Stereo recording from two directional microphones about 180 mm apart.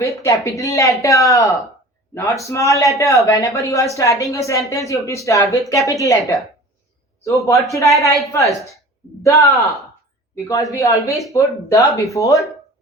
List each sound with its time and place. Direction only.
0.0 s a woman's voice: 15° left (ahead or behind)